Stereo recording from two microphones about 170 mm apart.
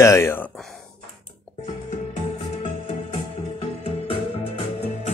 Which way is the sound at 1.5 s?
Centre (ahead or behind).